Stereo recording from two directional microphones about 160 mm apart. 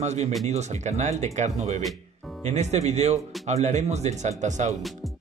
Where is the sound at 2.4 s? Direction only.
45° right (ahead or behind).